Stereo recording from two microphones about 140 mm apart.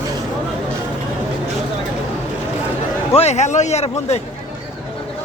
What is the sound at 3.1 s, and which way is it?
Speech, 50° left (ahead or behind).